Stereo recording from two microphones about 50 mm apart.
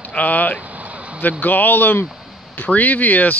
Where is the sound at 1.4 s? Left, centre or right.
Left.